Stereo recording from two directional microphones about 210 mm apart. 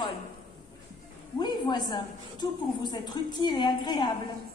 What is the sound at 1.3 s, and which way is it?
A woman's voice, 20° left (ahead or behind).